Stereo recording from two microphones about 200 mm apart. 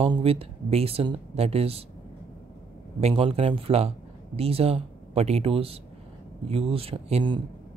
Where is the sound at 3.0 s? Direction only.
30° right (ahead or behind).